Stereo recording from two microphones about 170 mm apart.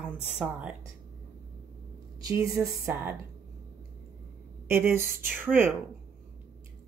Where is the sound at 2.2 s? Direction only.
20° right (ahead or behind).